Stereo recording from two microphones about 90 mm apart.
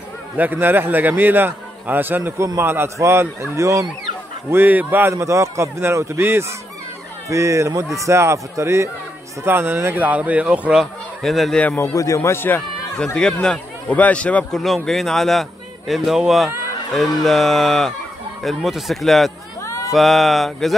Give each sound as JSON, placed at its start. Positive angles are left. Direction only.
{"t": 0.4, "sound": "a man's voice", "side_deg": -20}
{"t": 4.5, "sound": "a man's voice", "side_deg": -20}
{"t": 5.1, "sound": "a man's voice", "side_deg": -35}
{"t": 10.8, "sound": "speech", "side_deg": 0}
{"t": 11.6, "sound": "speech", "side_deg": 20}
{"t": 11.9, "sound": "a man's voice", "side_deg": 40}
{"t": 12.2, "sound": "speech", "side_deg": 25}
{"t": 12.9, "sound": "a man's voice", "side_deg": 10}
{"t": 14.6, "sound": "fowl", "side_deg": 0}
{"t": 19.6, "sound": "a sound", "side_deg": 35}
{"t": 19.9, "sound": "fowl", "side_deg": 0}